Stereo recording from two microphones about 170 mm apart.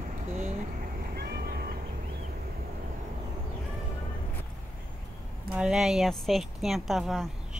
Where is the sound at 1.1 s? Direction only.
65° right (ahead or behind).